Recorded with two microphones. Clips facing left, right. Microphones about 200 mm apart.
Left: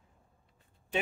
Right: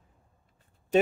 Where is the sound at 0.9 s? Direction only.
45° right (ahead or behind).